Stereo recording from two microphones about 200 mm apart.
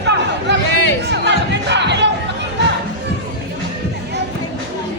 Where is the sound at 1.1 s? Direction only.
60° right (ahead or behind).